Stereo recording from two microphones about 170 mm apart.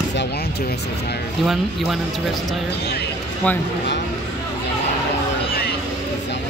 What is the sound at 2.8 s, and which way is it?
Speech, 70° left (ahead or behind).